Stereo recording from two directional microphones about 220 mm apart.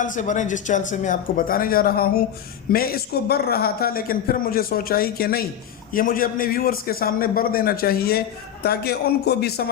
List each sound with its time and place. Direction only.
0.0 s a man's voice: 35° left (ahead or behind)